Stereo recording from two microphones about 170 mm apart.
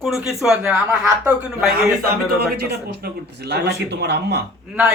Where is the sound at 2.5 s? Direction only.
70° right (ahead or behind).